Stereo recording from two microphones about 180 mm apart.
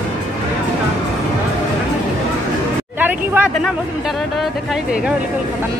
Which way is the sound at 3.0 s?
10° right (ahead or behind).